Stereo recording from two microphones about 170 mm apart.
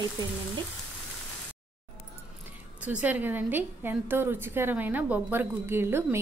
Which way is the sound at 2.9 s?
10° right (ahead or behind).